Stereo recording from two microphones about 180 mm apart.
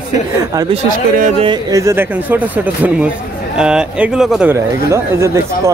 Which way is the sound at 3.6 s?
5° right (ahead or behind).